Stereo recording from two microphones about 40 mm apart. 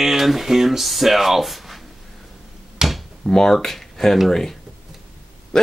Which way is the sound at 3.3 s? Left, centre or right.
Centre.